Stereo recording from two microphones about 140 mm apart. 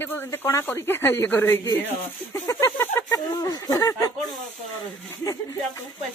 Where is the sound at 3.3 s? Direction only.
30° left (ahead or behind).